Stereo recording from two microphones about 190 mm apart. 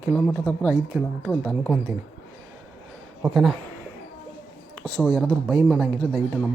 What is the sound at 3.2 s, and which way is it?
Speech, centre (ahead or behind).